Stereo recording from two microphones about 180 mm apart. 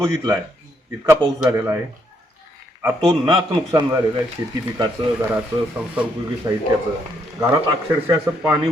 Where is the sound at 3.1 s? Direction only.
20° right (ahead or behind).